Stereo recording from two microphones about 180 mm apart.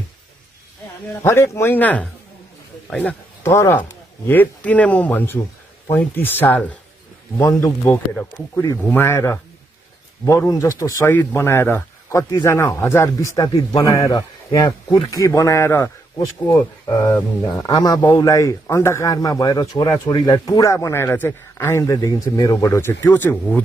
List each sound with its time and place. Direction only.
1.2 s speech: 15° left (ahead or behind)